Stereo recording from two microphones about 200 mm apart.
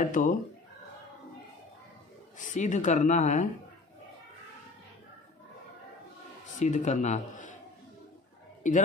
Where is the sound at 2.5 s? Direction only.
35° left (ahead or behind).